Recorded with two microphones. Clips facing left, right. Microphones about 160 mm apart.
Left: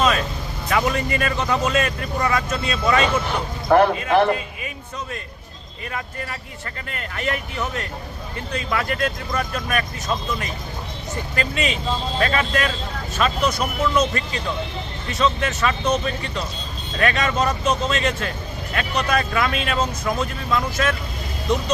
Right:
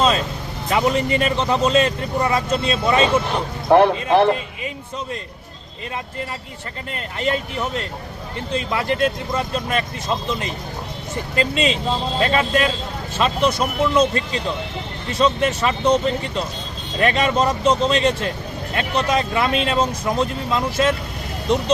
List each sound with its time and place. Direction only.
0.7 s speech: 25° right (ahead or behind)
6.9 s speech: 25° right (ahead or behind)